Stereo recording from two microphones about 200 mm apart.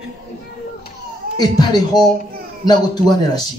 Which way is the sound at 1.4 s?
20° left (ahead or behind).